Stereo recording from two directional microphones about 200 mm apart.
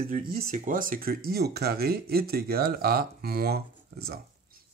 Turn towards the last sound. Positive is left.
turn(degrees=-55)  # may be behind; listen again after turning